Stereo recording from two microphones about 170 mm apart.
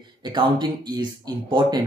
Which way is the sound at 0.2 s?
25° right (ahead or behind).